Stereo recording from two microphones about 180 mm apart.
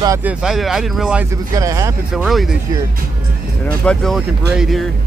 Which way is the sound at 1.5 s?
20° right (ahead or behind).